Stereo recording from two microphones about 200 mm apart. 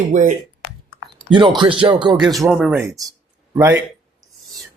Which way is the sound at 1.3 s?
25° right (ahead or behind).